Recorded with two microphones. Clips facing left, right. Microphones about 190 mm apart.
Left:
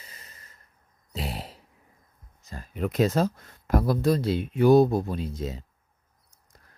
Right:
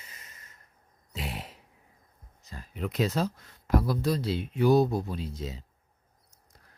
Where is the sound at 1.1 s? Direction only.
35° left (ahead or behind).